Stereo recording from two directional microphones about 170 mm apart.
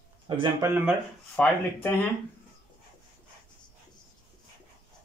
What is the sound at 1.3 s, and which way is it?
Speech, 10° left (ahead or behind).